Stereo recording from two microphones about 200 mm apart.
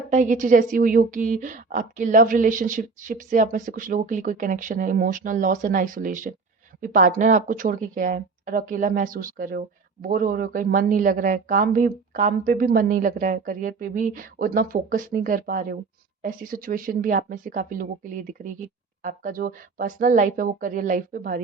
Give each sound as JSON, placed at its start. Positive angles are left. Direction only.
{"t": 0.1, "sound": "a woman's voice", "side_deg": -40}